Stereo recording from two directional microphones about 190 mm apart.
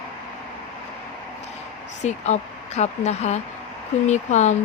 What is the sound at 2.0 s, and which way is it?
Speech, 35° left (ahead or behind).